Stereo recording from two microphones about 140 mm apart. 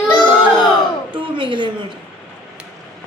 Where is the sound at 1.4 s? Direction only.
35° right (ahead or behind).